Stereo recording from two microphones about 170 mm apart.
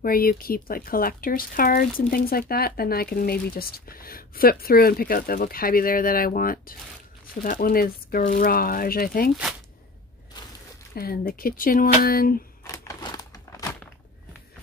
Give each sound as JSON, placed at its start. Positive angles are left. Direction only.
{"t": 0.0, "sound": "speech", "side_deg": 60}
{"t": 11.0, "sound": "speech", "side_deg": 60}
{"t": 12.6, "sound": "crumpling", "side_deg": 20}